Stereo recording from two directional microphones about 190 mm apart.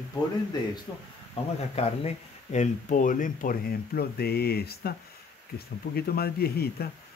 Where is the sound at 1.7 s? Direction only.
35° left (ahead or behind); by 6.8 s 55° left (ahead or behind).